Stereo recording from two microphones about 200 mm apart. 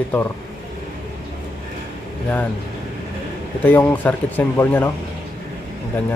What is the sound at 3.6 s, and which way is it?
Speech, 10° left (ahead or behind).